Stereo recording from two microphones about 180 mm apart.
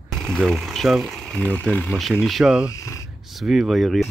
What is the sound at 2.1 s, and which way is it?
Speech, centre (ahead or behind).